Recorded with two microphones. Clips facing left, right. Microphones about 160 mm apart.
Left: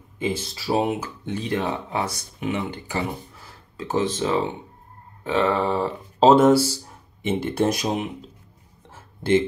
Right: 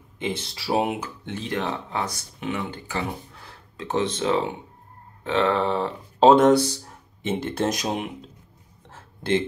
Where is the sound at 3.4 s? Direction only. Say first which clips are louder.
Left 1 dB; 5° left (ahead or behind).